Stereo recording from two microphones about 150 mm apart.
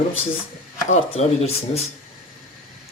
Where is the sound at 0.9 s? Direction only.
45° left (ahead or behind).